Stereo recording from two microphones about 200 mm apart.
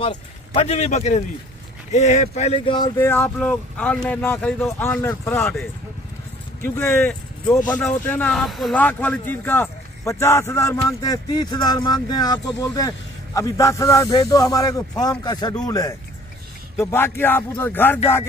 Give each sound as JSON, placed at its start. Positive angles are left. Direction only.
{"t": 0.0, "sound": "speech", "side_deg": 25}
{"t": 3.0, "sound": "speech", "side_deg": 10}